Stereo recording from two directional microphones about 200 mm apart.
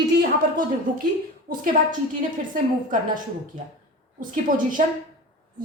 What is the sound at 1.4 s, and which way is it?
Speech, 45° right (ahead or behind).